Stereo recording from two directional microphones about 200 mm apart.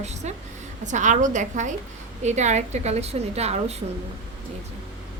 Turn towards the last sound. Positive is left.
turn(degrees=-30)  # may be behind; listen again after turning